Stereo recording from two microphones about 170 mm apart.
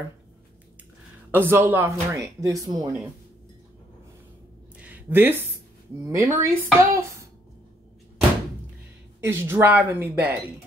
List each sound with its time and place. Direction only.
1.3 s speech: 10° right (ahead or behind)
4.7 s a sound: 10° right (ahead or behind)
6.0 s speech: 20° right (ahead or behind)
9.2 s speech: 15° right (ahead or behind)